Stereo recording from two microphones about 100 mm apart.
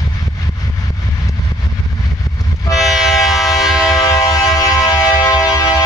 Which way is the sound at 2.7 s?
5° right (ahead or behind).